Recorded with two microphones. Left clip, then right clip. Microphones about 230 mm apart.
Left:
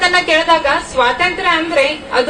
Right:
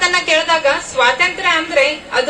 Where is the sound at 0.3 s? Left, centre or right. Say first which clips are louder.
Left 2 dB; right.